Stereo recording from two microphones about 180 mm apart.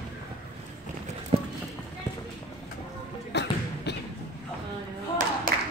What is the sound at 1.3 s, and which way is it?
Clip-clop, 30° right (ahead or behind).